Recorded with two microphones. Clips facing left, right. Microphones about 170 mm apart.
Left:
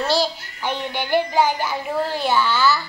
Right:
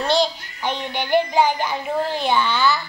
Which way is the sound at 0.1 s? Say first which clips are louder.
Right 1 dB; 20° right (ahead or behind).